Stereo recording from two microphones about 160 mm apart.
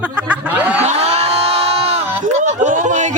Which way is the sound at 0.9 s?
40° right (ahead or behind).